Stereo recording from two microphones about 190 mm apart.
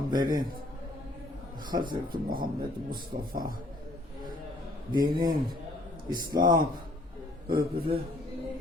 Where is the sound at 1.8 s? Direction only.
50° right (ahead or behind).